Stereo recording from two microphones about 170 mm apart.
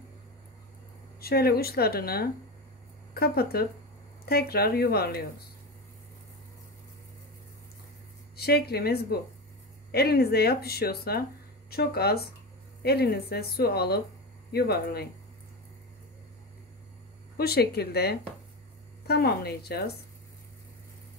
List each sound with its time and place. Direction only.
1.2 s speech: 65° left (ahead or behind)
8.4 s speech: 70° left (ahead or behind)
17.4 s speech: 70° left (ahead or behind)